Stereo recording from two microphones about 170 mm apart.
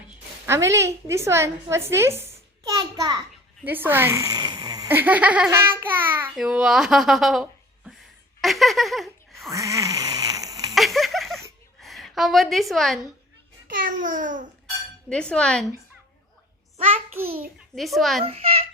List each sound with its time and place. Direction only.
0.4 s a woman's voice: 15° right (ahead or behind)
3.6 s a woman's voice: 10° right (ahead or behind)
4.9 s babbling: 10° right (ahead or behind)
6.3 s speech: 5° right (ahead or behind)
8.4 s a sound: centre (ahead or behind)
9.5 s a sound: 20° right (ahead or behind)
10.8 s a sound: centre (ahead or behind)
11.8 s a woman's voice: centre (ahead or behind)
13.7 s a child's voice: 50° right (ahead or behind)
15.1 s speech: 5° left (ahead or behind)
17.7 s speech: centre (ahead or behind)
18.3 s a child's voice: 35° right (ahead or behind)